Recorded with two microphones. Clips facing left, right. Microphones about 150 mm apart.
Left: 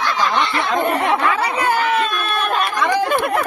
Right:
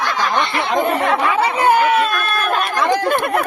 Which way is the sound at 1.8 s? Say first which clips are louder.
Right 3 dB; 5° right (ahead or behind).